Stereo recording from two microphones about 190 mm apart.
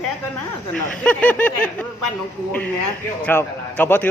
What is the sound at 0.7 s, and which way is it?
Speech, 5° left (ahead or behind).